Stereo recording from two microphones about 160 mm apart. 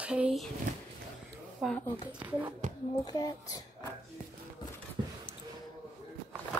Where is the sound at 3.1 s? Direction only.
25° left (ahead or behind).